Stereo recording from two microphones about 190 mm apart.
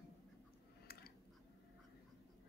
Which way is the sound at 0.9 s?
55° left (ahead or behind).